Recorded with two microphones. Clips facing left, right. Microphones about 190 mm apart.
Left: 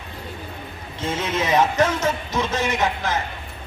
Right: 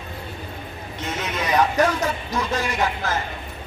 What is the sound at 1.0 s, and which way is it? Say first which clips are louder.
Speech: left 4 dB; 25° left (ahead or behind).